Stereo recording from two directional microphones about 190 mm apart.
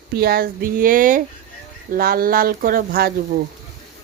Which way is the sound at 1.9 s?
50° right (ahead or behind).